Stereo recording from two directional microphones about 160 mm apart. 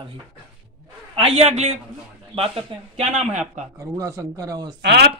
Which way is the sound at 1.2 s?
40° right (ahead or behind).